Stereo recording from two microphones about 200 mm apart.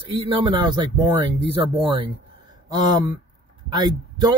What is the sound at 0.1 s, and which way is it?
A man's voice, 25° right (ahead or behind).